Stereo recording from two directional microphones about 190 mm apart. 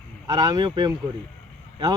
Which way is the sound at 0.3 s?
20° right (ahead or behind).